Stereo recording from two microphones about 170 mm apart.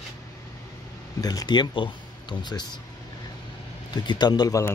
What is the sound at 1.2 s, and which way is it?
Speech, 25° left (ahead or behind).